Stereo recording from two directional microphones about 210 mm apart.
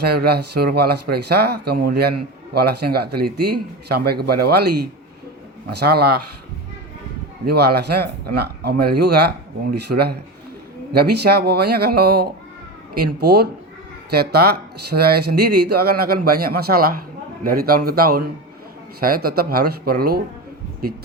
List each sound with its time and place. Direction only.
0.0 s speech: 50° right (ahead or behind)
7.4 s speech: 50° right (ahead or behind)